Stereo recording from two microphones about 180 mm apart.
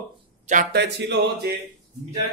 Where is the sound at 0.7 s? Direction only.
70° right (ahead or behind).